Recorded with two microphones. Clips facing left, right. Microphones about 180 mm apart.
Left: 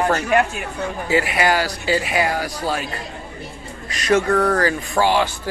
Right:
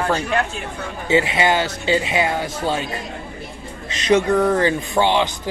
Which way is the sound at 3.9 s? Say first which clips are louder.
Right 1 dB; 20° right (ahead or behind).